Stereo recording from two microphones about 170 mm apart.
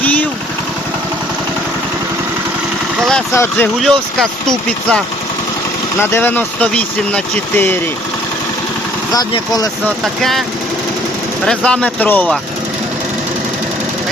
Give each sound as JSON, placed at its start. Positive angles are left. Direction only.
{"t": 0.0, "sound": "vehicle", "side_deg": 10}
{"t": 3.0, "sound": "vehicle", "side_deg": 5}
{"t": 3.3, "sound": "speech", "side_deg": 15}
{"t": 9.1, "sound": "speech", "side_deg": 20}
{"t": 9.8, "sound": "speech", "side_deg": 0}
{"t": 11.4, "sound": "speech", "side_deg": 5}